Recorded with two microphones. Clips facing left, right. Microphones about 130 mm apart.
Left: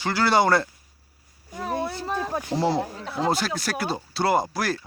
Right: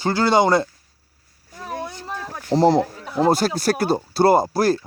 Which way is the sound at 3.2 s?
45° right (ahead or behind).